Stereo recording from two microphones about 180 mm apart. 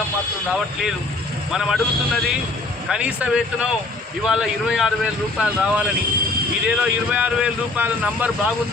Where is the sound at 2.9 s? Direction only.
5° right (ahead or behind).